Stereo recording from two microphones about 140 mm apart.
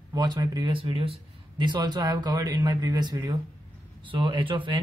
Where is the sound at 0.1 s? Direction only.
30° right (ahead or behind).